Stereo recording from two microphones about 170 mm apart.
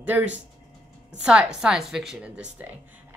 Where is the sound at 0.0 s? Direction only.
10° right (ahead or behind).